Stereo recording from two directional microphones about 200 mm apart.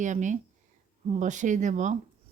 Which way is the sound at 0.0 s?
40° right (ahead or behind).